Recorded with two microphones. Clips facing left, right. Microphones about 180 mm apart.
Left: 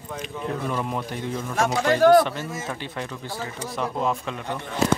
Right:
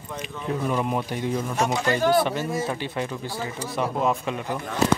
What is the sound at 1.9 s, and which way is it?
Speech, 55° left (ahead or behind).